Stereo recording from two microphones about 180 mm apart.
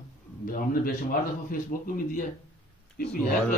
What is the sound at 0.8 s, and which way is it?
Speech, 50° left (ahead or behind).